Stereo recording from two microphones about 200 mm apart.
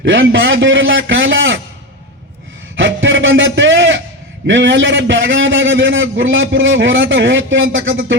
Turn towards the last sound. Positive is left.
turn(degrees=-70)  # may be behind; listen again after turning